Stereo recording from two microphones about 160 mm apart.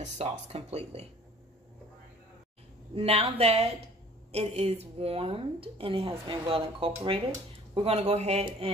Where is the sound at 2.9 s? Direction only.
35° right (ahead or behind).